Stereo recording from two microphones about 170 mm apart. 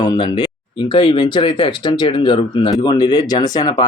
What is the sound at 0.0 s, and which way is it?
Speech, 25° left (ahead or behind).